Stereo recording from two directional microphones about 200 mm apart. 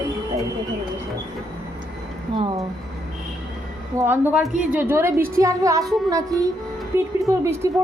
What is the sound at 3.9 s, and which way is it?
A woman's voice, 10° right (ahead or behind).